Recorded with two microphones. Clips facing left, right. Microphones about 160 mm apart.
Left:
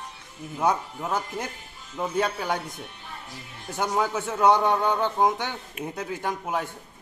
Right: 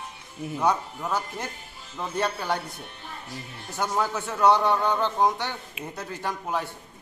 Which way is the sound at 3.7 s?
10° left (ahead or behind).